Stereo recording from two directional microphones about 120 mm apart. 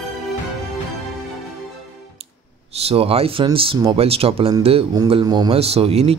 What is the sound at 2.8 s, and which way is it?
Speech, 55° right (ahead or behind).